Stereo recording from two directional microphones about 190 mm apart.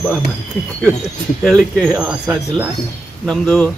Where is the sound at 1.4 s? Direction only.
5° left (ahead or behind).